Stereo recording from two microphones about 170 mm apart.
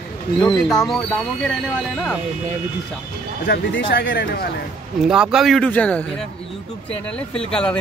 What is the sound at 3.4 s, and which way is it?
Speech, 65° left (ahead or behind).